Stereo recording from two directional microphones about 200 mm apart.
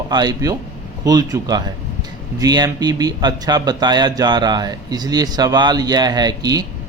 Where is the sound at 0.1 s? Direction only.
20° right (ahead or behind).